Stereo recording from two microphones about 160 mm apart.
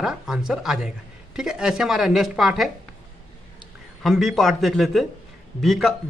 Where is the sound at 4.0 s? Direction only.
Centre (ahead or behind).